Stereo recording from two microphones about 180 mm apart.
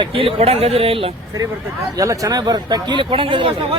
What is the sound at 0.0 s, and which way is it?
Speech, 30° right (ahead or behind).